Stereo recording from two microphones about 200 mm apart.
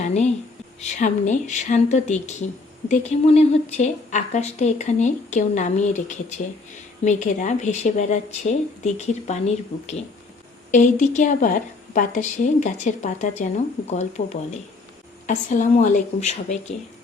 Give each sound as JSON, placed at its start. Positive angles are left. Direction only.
{"t": 0.0, "sound": "a sound", "side_deg": 35}
{"t": 0.8, "sound": "a woman's voice", "side_deg": 35}
{"t": 10.7, "sound": "a woman's voice", "side_deg": 40}
{"t": 15.3, "sound": "a woman's voice", "side_deg": 40}